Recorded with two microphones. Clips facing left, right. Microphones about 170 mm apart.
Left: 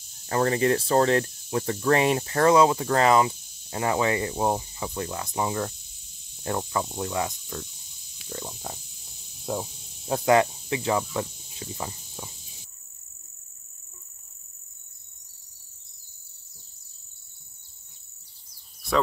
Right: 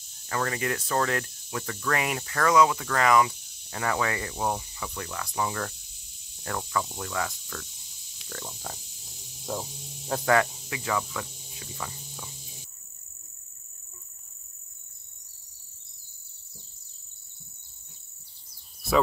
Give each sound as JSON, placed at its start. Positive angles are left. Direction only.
{"t": 0.3, "sound": "speech", "side_deg": 30}
{"t": 8.3, "sound": "stomach rumble", "side_deg": 15}
{"t": 9.5, "sound": "speech", "side_deg": 15}